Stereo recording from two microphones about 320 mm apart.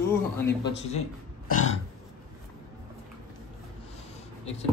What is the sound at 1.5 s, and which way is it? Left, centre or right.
Burping, left.